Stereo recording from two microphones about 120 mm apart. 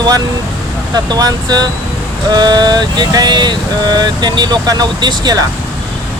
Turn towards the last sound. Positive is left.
turn(degrees=-35)  # may be behind; listen again after turning